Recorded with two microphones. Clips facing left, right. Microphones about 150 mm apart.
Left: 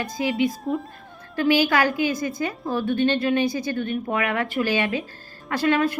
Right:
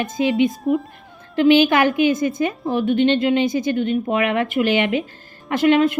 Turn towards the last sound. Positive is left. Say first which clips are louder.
# right 6 dB
turn(degrees=-20)  # may be behind; listen again after turning